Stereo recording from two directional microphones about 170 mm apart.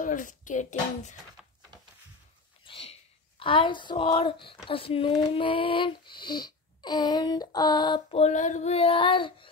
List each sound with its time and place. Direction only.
0.0 s speech: 50° left (ahead or behind)
1.4 s a sound: centre (ahead or behind)
2.6 s speech: 35° left (ahead or behind)
8.2 s child singing: 45° left (ahead or behind); by 9.5 s 30° left (ahead or behind)